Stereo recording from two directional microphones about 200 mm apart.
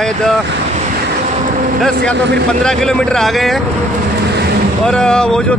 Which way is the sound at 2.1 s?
60° right (ahead or behind).